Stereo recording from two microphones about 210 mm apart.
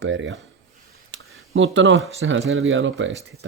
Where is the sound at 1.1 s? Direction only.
65° right (ahead or behind).